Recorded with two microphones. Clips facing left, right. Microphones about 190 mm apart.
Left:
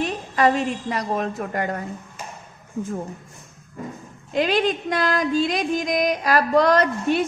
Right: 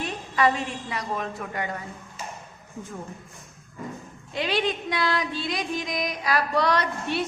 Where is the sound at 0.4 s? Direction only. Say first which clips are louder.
Left 4 dB; 40° left (ahead or behind).